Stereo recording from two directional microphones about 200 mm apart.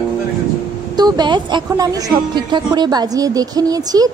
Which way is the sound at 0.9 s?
20° right (ahead or behind).